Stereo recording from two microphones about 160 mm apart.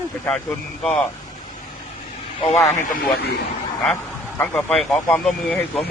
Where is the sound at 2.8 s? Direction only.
75° left (ahead or behind).